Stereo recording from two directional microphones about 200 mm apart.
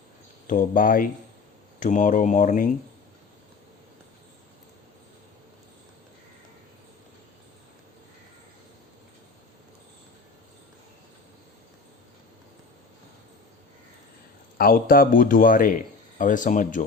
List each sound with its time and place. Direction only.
0.4 s speech: 40° left (ahead or behind)
14.6 s speech: 45° left (ahead or behind)